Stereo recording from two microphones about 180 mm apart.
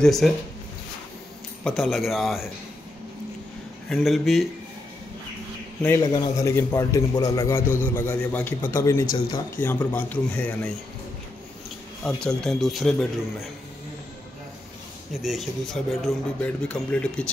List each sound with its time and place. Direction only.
0.0 s a man's voice: centre (ahead or behind)
1.6 s a man's voice: 5° left (ahead or behind)
3.9 s a man's voice: centre (ahead or behind)
5.8 s a man's voice: 15° left (ahead or behind)
12.0 s a man's voice: 5° left (ahead or behind)
15.2 s a man's voice: centre (ahead or behind)